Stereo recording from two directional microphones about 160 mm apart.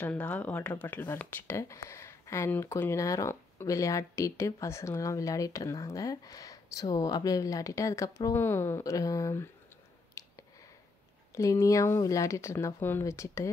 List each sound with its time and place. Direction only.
0.0 s speech: 10° left (ahead or behind)
10.2 s a sound: 20° left (ahead or behind)
11.3 s speech: 20° left (ahead or behind)